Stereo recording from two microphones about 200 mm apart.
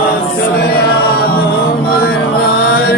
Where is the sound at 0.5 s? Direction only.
50° left (ahead or behind).